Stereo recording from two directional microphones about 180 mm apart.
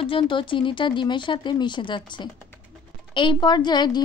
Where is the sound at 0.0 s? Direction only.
30° left (ahead or behind).